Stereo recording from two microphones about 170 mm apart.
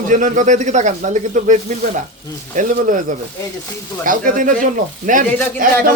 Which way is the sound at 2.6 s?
50° right (ahead or behind).